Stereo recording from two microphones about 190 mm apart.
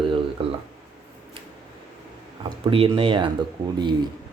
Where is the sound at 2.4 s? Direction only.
30° right (ahead or behind).